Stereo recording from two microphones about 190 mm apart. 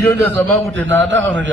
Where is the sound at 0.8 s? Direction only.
80° right.